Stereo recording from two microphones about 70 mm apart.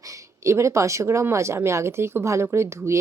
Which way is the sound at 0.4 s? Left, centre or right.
Right.